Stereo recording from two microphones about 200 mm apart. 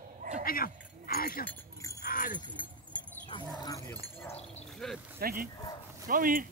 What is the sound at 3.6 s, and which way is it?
Speech, 15° left (ahead or behind).